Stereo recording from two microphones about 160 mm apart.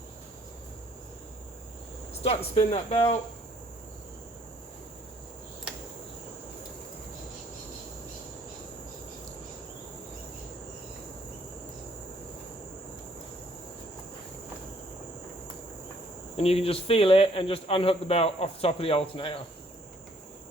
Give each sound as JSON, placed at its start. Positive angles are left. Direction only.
{"t": 2.2, "sound": "speech", "side_deg": 40}
{"t": 16.4, "sound": "speech", "side_deg": 40}